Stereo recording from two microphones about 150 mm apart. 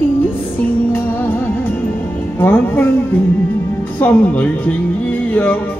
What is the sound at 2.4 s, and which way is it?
Music, 15° left (ahead or behind).